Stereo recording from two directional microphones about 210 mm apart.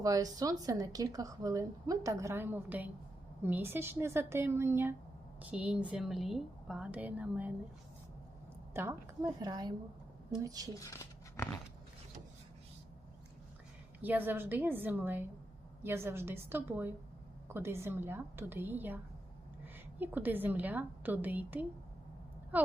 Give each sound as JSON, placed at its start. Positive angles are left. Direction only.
{"t": 0.0, "sound": "a woman's voice", "side_deg": -15}
{"t": 8.7, "sound": "a woman's voice", "side_deg": -10}
{"t": 10.8, "sound": "speech", "side_deg": 15}
{"t": 14.0, "sound": "a woman's voice", "side_deg": -10}